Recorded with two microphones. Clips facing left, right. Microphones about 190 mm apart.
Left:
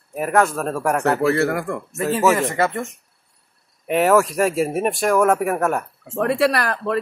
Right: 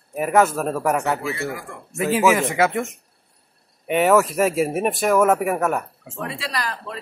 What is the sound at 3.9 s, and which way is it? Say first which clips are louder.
Speech: left 1 dB; centre (ahead or behind).